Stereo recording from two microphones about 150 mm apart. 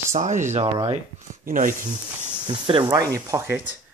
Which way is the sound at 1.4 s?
65° right (ahead or behind).